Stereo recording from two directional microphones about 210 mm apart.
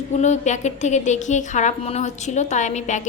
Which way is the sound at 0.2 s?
35° left (ahead or behind).